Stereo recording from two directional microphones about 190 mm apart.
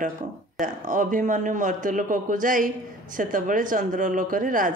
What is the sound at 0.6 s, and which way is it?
Speech, 45° right (ahead or behind).